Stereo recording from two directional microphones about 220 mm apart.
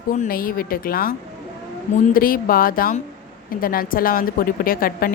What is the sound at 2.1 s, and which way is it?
A woman's voice, 40° left (ahead or behind).